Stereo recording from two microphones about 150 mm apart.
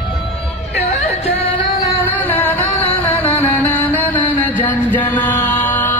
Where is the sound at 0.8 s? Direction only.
45° left (ahead or behind).